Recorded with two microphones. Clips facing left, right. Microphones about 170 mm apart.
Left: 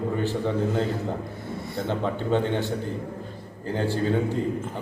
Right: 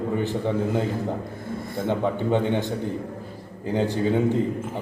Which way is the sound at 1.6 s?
50° right (ahead or behind).